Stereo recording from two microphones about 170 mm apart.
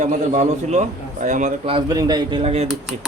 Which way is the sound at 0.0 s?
45° right (ahead or behind).